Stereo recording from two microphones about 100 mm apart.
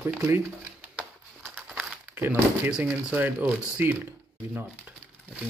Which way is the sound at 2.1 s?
20° right (ahead or behind).